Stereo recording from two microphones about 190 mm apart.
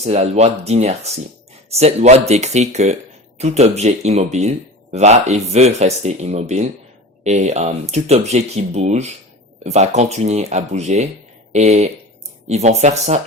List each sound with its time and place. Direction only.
0.0 s speech: 35° right (ahead or behind)